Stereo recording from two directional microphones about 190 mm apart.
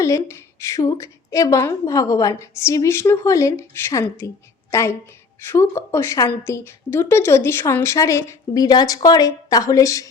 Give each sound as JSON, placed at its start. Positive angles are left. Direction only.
{"t": 0.0, "sound": "a woman's voice", "side_deg": 15}